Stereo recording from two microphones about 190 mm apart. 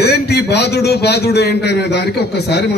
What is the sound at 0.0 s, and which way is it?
A man's voice, 60° left (ahead or behind).